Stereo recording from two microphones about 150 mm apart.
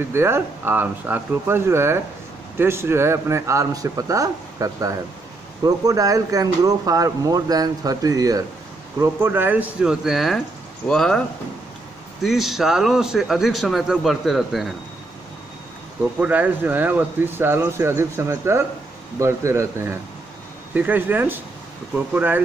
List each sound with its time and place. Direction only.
0.0 s a man's voice: 15° right (ahead or behind); by 14.7 s centre (ahead or behind)
16.2 s speech: 10° right (ahead or behind)